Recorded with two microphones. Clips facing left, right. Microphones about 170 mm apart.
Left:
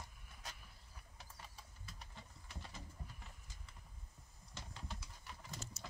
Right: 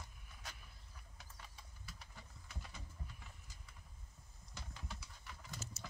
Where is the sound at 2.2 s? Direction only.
25° left (ahead or behind).